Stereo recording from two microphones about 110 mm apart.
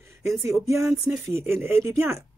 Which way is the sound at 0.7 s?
25° right (ahead or behind).